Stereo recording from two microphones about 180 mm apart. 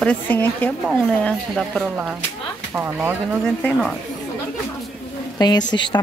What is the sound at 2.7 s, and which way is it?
Speech, 10° right (ahead or behind).